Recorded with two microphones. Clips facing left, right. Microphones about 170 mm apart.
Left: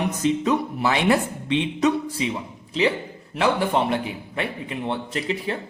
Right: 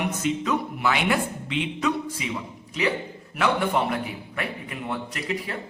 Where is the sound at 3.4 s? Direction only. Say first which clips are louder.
Left 2 dB; 30° left (ahead or behind).